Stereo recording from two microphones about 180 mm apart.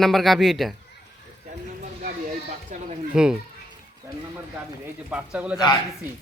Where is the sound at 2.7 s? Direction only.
40° right (ahead or behind).